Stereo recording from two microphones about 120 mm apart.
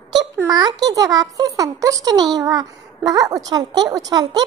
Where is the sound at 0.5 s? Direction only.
35° right (ahead or behind).